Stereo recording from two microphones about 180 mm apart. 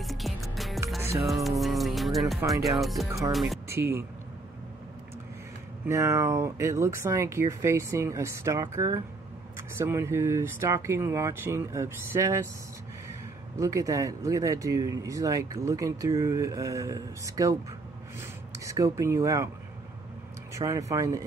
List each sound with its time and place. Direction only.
0.0 s music: centre (ahead or behind)
3.2 s speech: centre (ahead or behind)
3.6 s speech: 15° right (ahead or behind)
5.9 s speech: 15° right (ahead or behind)
13.6 s speech: 20° right (ahead or behind)
20.5 s speech: 15° right (ahead or behind)